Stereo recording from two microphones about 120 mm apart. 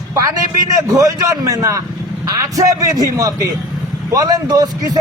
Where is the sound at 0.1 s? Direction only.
25° right (ahead or behind).